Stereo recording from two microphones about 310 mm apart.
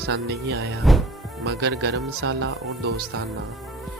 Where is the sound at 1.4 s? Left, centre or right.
Right.